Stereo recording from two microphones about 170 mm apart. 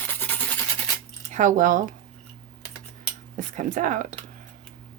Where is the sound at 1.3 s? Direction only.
50° right (ahead or behind).